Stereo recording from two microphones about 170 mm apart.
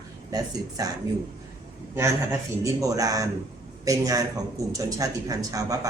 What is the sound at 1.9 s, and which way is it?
A man's voice, 15° right (ahead or behind).